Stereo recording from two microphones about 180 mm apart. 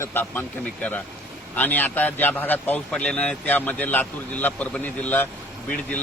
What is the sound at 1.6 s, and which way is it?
Speech, 10° left (ahead or behind).